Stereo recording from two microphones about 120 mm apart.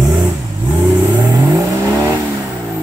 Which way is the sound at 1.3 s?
30° right (ahead or behind).